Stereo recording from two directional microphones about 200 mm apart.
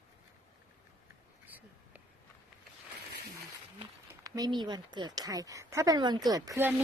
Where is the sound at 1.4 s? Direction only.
10° right (ahead or behind).